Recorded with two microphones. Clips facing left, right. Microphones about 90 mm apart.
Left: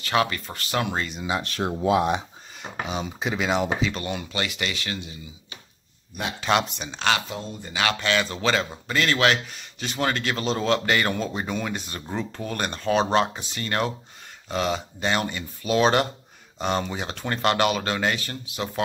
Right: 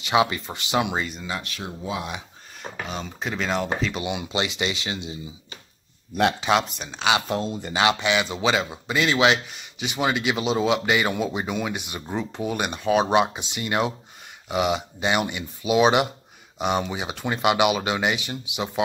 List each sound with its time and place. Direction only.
0.0 s speech: 15° right (ahead or behind)
1.4 s speech: 45° left (ahead or behind)
1.8 s speech: 60° left (ahead or behind)
2.6 s speech: 5° left (ahead or behind)
3.9 s speech: 10° right (ahead or behind)
6.4 s speech: centre (ahead or behind)
7.2 s speech: 75° right (ahead or behind)
7.7 s speech: 20° right (ahead or behind)